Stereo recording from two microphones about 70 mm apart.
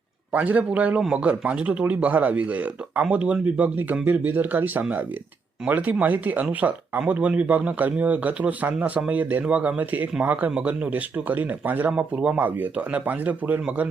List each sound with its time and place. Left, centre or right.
0.3 s a man's voice: right
0.9 s a man's voice: centre